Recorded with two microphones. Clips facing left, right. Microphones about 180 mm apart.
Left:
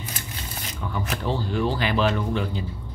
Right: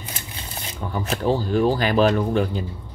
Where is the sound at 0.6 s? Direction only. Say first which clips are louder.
Right 3 dB; 30° right (ahead or behind).